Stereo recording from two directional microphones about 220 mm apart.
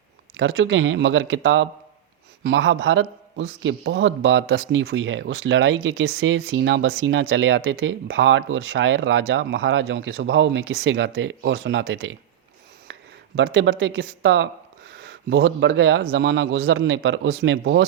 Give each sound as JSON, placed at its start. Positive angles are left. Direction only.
{"t": 0.3, "sound": "a man's voice", "side_deg": -60}